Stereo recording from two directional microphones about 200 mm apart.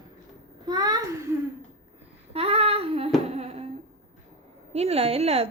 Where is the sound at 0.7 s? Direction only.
20° right (ahead or behind).